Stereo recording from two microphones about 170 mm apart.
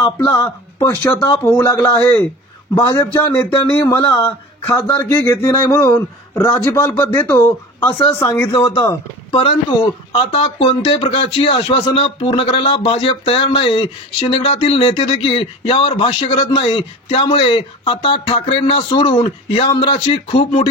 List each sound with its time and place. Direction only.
0.0 s speech: 20° left (ahead or behind)
8.5 s speech: 25° left (ahead or behind)